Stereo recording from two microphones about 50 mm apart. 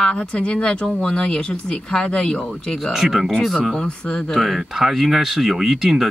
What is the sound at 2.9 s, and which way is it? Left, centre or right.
Speech, centre.